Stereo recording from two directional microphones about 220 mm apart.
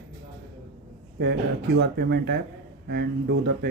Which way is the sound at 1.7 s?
50° right (ahead or behind).